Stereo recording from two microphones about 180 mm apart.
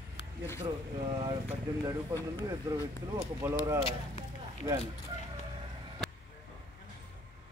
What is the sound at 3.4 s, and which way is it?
Speech, 15° right (ahead or behind).